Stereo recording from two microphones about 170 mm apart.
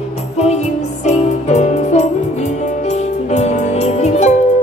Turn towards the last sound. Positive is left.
turn(degrees=40)  # may be behind; listen again after turning